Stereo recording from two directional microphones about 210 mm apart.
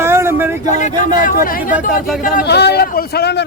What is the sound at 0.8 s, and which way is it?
Speech, 40° left (ahead or behind).